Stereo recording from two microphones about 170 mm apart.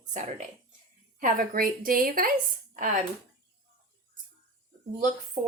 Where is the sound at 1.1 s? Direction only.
55° right (ahead or behind).